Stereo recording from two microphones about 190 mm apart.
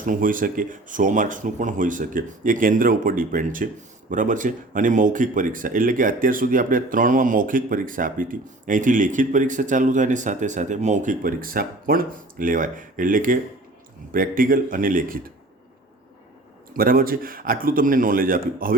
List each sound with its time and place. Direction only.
0.0 s speech: 45° right (ahead or behind)
16.7 s speech: 50° right (ahead or behind)